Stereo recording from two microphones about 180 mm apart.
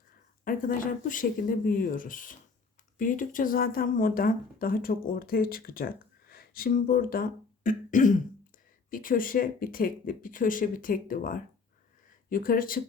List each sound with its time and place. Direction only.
0.4 s speech: 50° left (ahead or behind)